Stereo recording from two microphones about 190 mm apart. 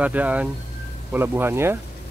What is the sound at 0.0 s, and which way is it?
A man's voice, 10° right (ahead or behind).